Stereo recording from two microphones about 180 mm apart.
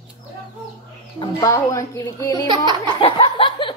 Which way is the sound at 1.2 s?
20° left (ahead or behind).